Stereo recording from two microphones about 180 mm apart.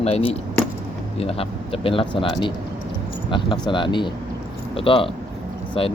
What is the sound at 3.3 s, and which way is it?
Speech, 25° left (ahead or behind).